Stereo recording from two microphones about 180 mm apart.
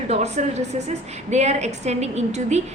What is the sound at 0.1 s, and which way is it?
A woman's voice, 40° right (ahead or behind).